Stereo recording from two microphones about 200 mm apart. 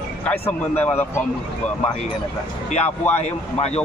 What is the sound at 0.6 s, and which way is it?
Speech, 10° left (ahead or behind).